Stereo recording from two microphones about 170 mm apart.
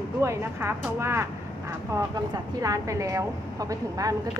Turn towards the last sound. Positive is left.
turn(degrees=-20)  # may be behind; listen again after turning